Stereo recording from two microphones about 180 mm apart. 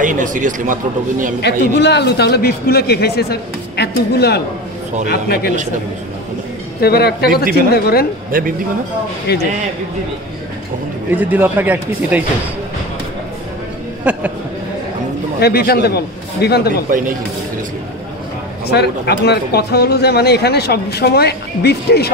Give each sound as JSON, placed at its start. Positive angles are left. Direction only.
{"t": 0.0, "sound": "a man's voice", "side_deg": -45}
{"t": 1.4, "sound": "speech", "side_deg": 70}
{"t": 6.8, "sound": "speech", "side_deg": 60}
{"t": 8.3, "sound": "a man's voice", "side_deg": -50}
{"t": 9.3, "sound": "a man's voice", "side_deg": 65}
{"t": 11.1, "sound": "speech", "side_deg": -10}
{"t": 14.0, "sound": "speech", "side_deg": -10}
{"t": 15.4, "sound": "speech", "side_deg": 60}
{"t": 18.7, "sound": "speech", "side_deg": 70}